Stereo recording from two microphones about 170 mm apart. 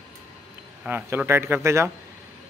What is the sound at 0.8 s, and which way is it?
Speech, 10° right (ahead or behind).